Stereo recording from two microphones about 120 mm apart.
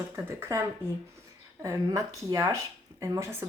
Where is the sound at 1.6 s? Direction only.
30° right (ahead or behind).